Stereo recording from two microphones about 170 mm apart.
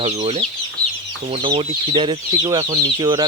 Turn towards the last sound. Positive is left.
turn(degrees=-25)  # may be behind; listen again after turning